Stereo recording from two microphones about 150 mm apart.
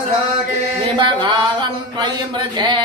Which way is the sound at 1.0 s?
30° right (ahead or behind).